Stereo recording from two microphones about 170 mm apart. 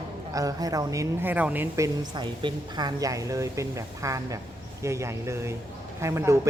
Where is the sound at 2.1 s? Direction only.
25° right (ahead or behind).